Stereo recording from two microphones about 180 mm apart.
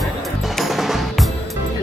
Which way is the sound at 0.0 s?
Centre (ahead or behind).